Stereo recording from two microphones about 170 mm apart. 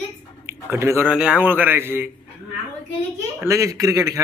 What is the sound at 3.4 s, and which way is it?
Speech, 20° right (ahead or behind).